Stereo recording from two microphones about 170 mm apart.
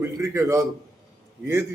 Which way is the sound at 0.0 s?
15° right (ahead or behind).